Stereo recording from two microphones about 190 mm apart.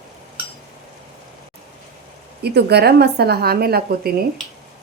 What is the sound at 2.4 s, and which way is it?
A woman's voice, 60° right (ahead or behind).